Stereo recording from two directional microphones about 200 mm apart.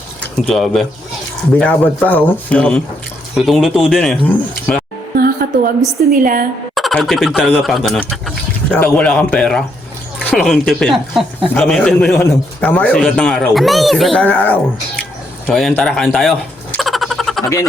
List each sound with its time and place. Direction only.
0.2 s a man's voice: centre (ahead or behind)
5.1 s a woman's voice: 45° right (ahead or behind)
6.7 s a man's voice: centre (ahead or behind)
15.4 s a sound: 5° left (ahead or behind)